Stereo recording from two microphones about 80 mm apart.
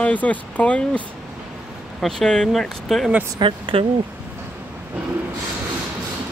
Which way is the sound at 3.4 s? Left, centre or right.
Right.